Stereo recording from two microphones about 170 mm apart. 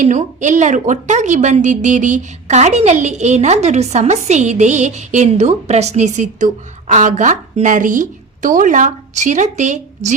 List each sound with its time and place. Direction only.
0.0 s a woman's voice: 45° right (ahead or behind)